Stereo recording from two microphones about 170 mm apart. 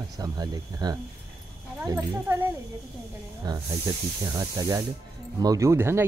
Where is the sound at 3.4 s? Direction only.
25° right (ahead or behind).